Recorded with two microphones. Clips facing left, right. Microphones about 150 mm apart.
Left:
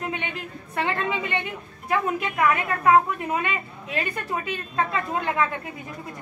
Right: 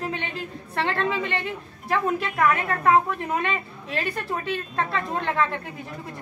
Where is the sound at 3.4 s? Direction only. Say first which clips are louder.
Right 1 dB; 5° left (ahead or behind).